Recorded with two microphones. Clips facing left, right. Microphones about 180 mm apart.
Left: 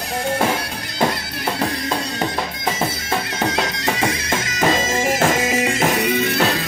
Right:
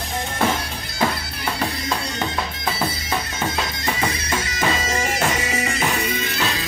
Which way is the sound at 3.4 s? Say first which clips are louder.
Left 5 dB; 80° left.